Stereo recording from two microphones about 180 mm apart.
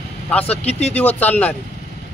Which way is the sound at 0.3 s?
5° left (ahead or behind).